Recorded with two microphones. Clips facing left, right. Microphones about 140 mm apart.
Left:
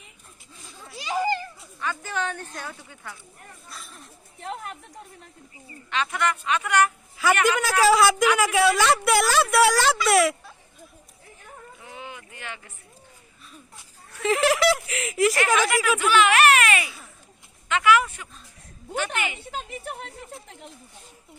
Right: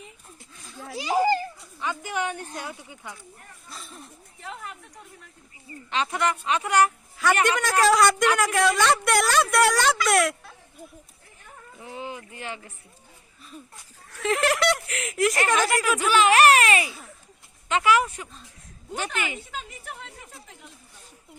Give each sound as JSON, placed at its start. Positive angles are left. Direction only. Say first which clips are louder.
{"t": 1.0, "sound": "children playing", "louder": "right 3 dB", "side_deg": -40}
{"t": 1.8, "sound": "a woman's voice", "louder": "even", "side_deg": -15}
{"t": 3.7, "sound": "speech", "louder": "right 3 dB", "side_deg": 0}
{"t": 5.9, "sound": "speech", "louder": "even", "side_deg": -30}
{"t": 7.4, "sound": "a woman's voice", "louder": "left 2 dB", "side_deg": 5}
{"t": 11.8, "sound": "speech", "louder": "right 6 dB", "side_deg": -30}
{"t": 14.1, "sound": "a woman's voice", "louder": "left 2 dB", "side_deg": 0}
{"t": 16.0, "sound": "speech", "louder": "right 1 dB", "side_deg": -35}